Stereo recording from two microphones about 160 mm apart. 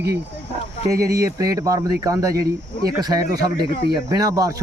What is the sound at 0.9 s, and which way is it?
Speech, 20° right (ahead or behind).